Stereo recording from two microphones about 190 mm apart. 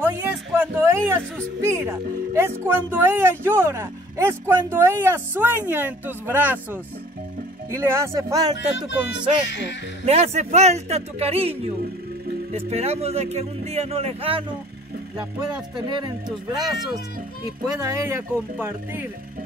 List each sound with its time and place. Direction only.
0.0 s speech: 10° right (ahead or behind)
8.5 s speech: 70° left (ahead or behind)
10.0 s speech: 35° right (ahead or behind)
15.7 s speech: 25° right (ahead or behind)
17.7 s speech: 15° right (ahead or behind)